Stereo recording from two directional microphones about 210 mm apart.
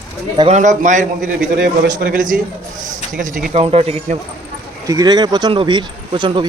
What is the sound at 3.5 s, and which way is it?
Speech, 30° right (ahead or behind).